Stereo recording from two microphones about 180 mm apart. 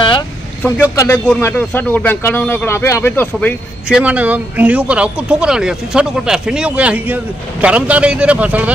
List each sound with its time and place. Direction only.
0.6 s speech: 10° left (ahead or behind)
3.9 s speech: 10° right (ahead or behind)